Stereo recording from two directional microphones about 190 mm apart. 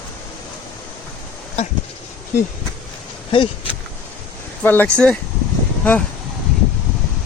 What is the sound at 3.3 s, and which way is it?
Speech, 25° left (ahead or behind).